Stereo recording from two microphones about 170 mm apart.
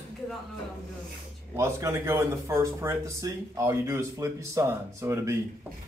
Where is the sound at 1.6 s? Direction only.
15° right (ahead or behind).